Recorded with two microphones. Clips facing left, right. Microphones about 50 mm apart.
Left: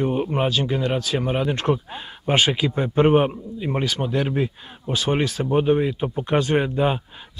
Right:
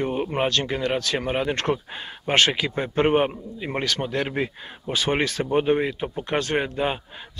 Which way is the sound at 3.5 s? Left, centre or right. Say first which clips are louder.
Left 2 dB; right.